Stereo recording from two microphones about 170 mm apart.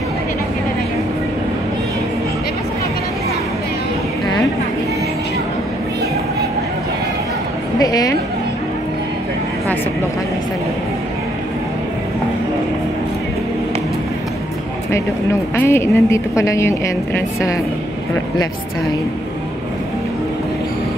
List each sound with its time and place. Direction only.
7.8 s a woman's voice: 20° left (ahead or behind)
15.5 s a woman's voice: 15° left (ahead or behind)